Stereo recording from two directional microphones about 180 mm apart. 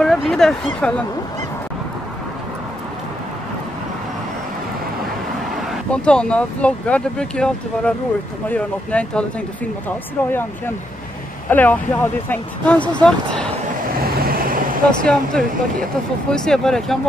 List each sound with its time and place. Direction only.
0.0 s speech: 5° left (ahead or behind)
5.9 s speech: 5° left (ahead or behind)
11.5 s speech: 10° left (ahead or behind)
14.1 s vehicle: 55° right (ahead or behind)
14.9 s speech: 5° left (ahead or behind)